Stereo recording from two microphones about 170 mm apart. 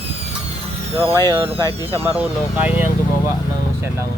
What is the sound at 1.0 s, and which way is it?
Speech, 15° left (ahead or behind).